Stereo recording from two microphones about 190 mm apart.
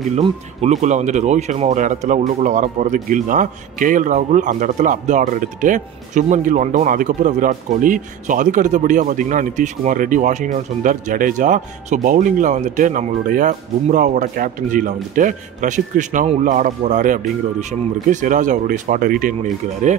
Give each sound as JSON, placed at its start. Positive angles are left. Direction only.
{"t": 0.2, "sound": "speech", "side_deg": -35}